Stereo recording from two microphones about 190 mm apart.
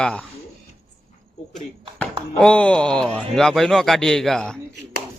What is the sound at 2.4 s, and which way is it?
Speech, 5° left (ahead or behind).